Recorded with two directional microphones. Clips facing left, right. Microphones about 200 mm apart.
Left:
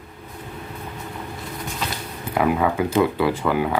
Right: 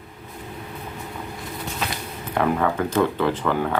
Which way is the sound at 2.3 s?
5° left (ahead or behind).